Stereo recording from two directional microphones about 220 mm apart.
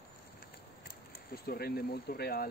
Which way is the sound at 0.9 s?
45° left (ahead or behind).